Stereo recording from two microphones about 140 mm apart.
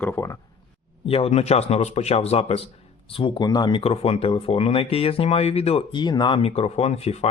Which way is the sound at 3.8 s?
45° left (ahead or behind).